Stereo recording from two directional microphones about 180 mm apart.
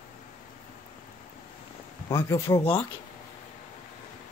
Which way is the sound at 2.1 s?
15° left (ahead or behind).